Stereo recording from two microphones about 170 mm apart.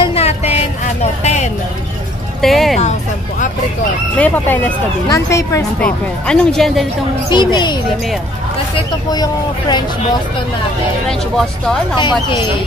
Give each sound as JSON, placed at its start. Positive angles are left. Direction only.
{"t": 0.0, "sound": "vehicle", "side_deg": 35}
{"t": 1.2, "sound": "a sound", "side_deg": 40}
{"t": 2.4, "sound": "speech", "side_deg": 0}
{"t": 4.2, "sound": "speech", "side_deg": 10}
{"t": 5.8, "sound": "speech", "side_deg": 5}
{"t": 7.2, "sound": "speech", "side_deg": 25}
{"t": 12.0, "sound": "speech", "side_deg": 25}